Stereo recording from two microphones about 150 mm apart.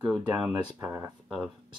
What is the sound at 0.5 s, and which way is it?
Speech, 20° right (ahead or behind).